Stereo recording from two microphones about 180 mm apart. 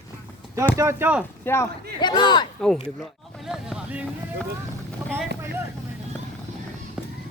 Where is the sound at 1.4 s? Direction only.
15° left (ahead or behind).